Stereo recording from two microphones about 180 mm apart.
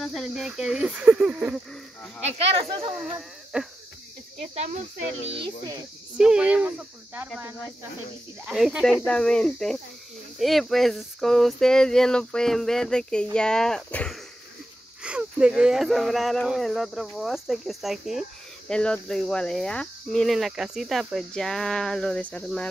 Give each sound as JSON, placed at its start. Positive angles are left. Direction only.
{"t": 0.0, "sound": "speech", "side_deg": 0}
{"t": 2.2, "sound": "speech", "side_deg": -35}
{"t": 3.5, "sound": "speech", "side_deg": -5}
{"t": 6.1, "sound": "speech", "side_deg": -5}